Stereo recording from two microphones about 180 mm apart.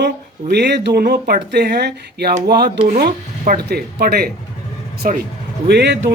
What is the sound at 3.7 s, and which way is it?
Speech, 60° right (ahead or behind).